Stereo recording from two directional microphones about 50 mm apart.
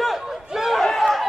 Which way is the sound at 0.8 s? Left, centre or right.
Centre.